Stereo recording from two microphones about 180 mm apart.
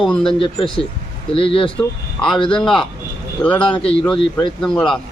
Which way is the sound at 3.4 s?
5° left (ahead or behind).